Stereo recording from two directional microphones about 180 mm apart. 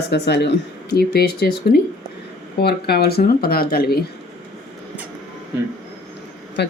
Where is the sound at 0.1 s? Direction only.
65° left (ahead or behind).